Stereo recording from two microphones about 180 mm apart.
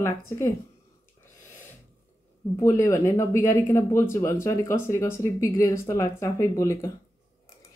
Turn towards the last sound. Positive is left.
turn(degrees=15)  # may be behind; listen again after turning